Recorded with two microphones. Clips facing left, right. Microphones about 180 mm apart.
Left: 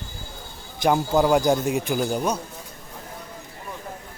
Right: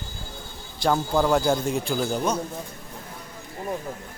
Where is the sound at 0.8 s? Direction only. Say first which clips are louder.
Left 2 dB; 15° left (ahead or behind).